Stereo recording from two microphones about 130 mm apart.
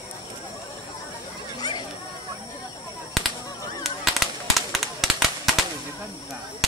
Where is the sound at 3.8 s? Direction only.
Centre (ahead or behind).